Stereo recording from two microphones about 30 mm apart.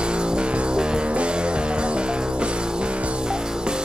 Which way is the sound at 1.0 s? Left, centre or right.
Right.